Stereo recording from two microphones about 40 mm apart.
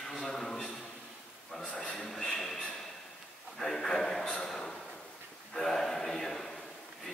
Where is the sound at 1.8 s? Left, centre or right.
Centre.